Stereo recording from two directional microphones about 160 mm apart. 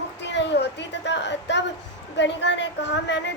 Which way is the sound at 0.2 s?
90° left.